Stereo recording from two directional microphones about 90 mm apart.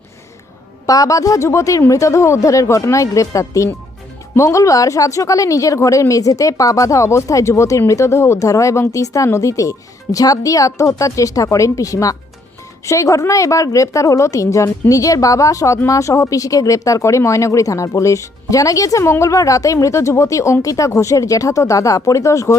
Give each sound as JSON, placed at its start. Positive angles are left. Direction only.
{"t": 0.9, "sound": "speech", "side_deg": 40}